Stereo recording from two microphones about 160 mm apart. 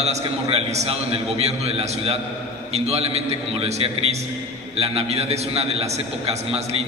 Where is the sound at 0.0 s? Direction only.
40° right (ahead or behind).